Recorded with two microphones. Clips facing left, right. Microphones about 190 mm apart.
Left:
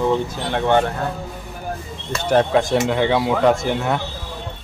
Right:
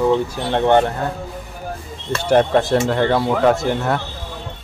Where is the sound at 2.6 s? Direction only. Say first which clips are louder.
Right 1 dB; centre (ahead or behind).